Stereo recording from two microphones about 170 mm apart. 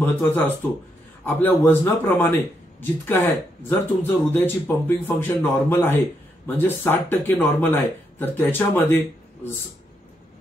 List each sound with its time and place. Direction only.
0.0 s speech: 10° left (ahead or behind)